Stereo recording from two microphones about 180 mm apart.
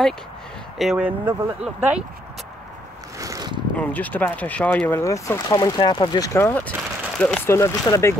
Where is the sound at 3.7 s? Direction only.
10° left (ahead or behind).